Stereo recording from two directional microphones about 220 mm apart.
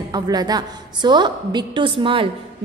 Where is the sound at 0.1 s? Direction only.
20° right (ahead or behind).